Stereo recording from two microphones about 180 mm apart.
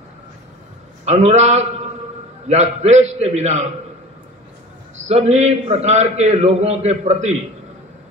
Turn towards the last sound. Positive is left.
turn(degrees=-40)  # may be behind; listen again after turning